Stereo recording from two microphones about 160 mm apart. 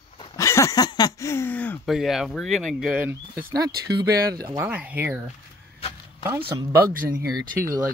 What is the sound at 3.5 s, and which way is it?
Speech, 25° right (ahead or behind).